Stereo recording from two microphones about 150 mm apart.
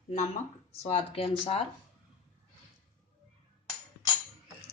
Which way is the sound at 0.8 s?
40° left (ahead or behind).